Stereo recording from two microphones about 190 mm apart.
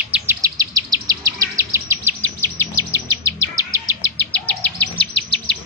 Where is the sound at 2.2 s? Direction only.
10° left (ahead or behind).